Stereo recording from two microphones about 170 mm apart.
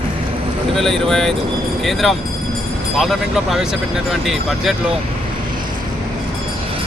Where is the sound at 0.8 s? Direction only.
5° left (ahead or behind).